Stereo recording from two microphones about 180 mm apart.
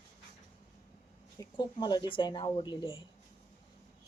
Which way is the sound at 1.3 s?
25° left (ahead or behind).